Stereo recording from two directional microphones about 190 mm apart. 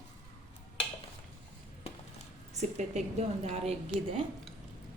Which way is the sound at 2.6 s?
35° right (ahead or behind).